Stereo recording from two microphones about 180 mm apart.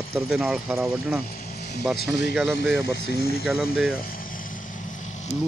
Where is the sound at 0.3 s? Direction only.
Centre (ahead or behind).